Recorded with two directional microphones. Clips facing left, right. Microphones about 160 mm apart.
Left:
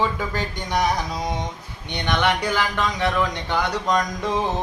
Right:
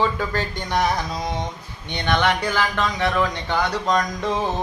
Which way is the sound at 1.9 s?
15° left (ahead or behind).